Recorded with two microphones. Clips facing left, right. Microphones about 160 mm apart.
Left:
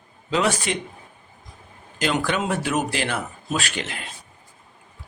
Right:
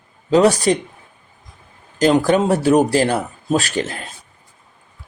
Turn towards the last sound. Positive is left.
turn(degrees=-40)  # may be behind; listen again after turning